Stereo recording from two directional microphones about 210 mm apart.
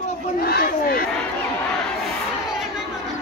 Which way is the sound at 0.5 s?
45° left (ahead or behind).